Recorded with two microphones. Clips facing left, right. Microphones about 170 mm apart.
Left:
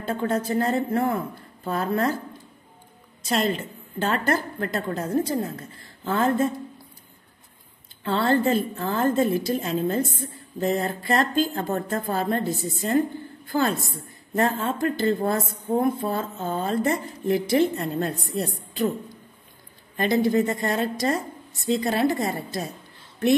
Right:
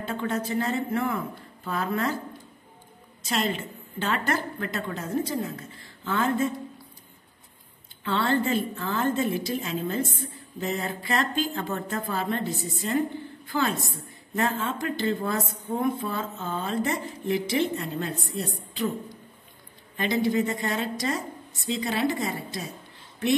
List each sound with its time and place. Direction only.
0.0 s a woman's voice: 40° left (ahead or behind)
3.3 s a woman's voice: 40° left (ahead or behind)
8.0 s speech: 40° left (ahead or behind)
20.0 s speech: 45° left (ahead or behind)